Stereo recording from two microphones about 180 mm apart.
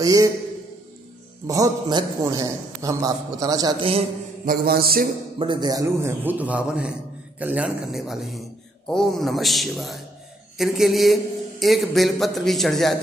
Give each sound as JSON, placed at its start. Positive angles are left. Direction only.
{"t": 0.0, "sound": "a man's voice", "side_deg": -20}
{"t": 1.5, "sound": "a man's voice", "side_deg": -20}
{"t": 4.5, "sound": "mantra", "side_deg": -55}
{"t": 5.4, "sound": "a man's voice", "side_deg": -25}